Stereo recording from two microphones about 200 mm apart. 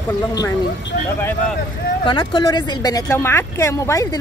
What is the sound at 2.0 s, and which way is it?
Speech, 20° left (ahead or behind).